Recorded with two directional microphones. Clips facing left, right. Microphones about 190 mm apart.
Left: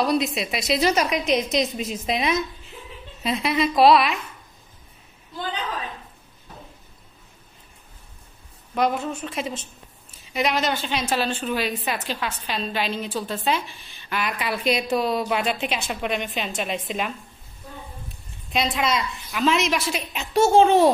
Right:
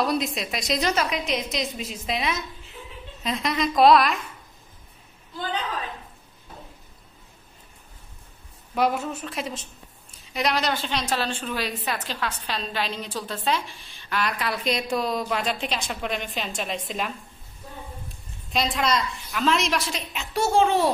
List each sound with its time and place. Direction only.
0.0 s a woman's voice: centre (ahead or behind)
1.1 s a woman's voice: 20° left (ahead or behind)
3.2 s a woman's voice: 10° left (ahead or behind)
8.7 s a woman's voice: 5° right (ahead or behind)
18.5 s a woman's voice: centre (ahead or behind)
20.1 s a woman's voice: 20° left (ahead or behind)